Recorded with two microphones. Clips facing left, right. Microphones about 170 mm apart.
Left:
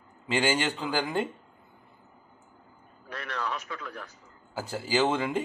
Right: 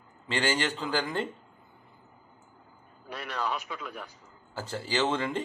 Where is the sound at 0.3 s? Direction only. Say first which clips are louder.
Left 2 dB; 10° left (ahead or behind).